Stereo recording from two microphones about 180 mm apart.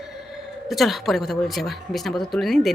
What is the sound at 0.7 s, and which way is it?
Speech, centre (ahead or behind).